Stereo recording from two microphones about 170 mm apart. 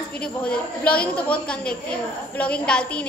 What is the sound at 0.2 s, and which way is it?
A woman's voice, 5° left (ahead or behind).